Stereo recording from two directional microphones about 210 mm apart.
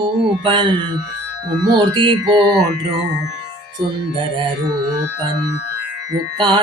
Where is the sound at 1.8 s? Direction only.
20° right (ahead or behind).